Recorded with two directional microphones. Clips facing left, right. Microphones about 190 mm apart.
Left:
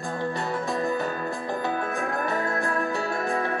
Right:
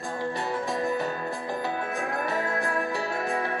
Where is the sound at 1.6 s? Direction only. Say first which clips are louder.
Left 3 dB; 50° left (ahead or behind).